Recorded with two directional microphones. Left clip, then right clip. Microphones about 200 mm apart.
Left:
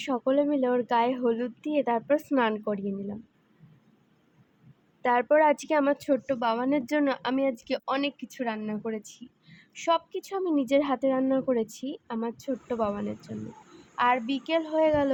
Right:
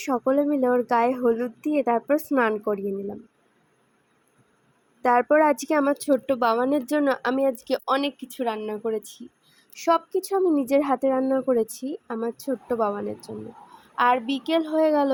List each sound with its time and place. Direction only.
0.0 s speech: 25° right (ahead or behind)
5.0 s speech: 25° right (ahead or behind)